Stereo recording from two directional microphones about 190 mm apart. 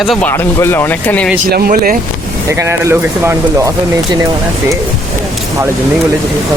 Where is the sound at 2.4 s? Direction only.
15° right (ahead or behind).